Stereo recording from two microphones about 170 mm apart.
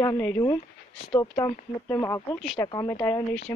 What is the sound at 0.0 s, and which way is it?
Speech, 15° left (ahead or behind).